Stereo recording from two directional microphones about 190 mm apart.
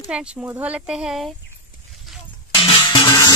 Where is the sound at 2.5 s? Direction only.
25° left (ahead or behind).